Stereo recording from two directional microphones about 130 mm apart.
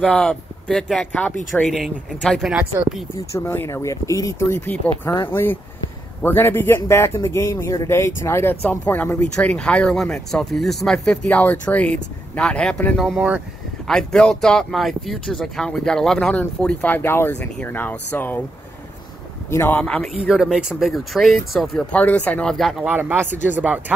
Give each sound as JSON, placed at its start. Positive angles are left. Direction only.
{"t": 0.0, "sound": "speech", "side_deg": 5}
{"t": 3.3, "sound": "speech", "side_deg": 20}
{"t": 13.8, "sound": "speech", "side_deg": 5}
{"t": 19.5, "sound": "speech", "side_deg": 20}
{"t": 19.8, "sound": "speech", "side_deg": 5}
{"t": 22.8, "sound": "speech", "side_deg": -15}